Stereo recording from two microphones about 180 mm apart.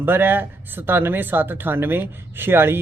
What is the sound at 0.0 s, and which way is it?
Speech, 10° right (ahead or behind).